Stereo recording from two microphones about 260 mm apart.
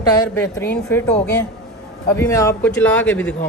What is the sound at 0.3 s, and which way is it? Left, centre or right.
Speech, centre.